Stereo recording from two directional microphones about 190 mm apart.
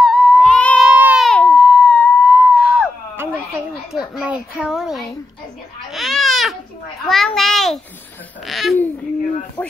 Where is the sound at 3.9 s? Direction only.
5° right (ahead or behind).